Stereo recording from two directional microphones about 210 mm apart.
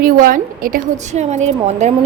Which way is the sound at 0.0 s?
40° right (ahead or behind).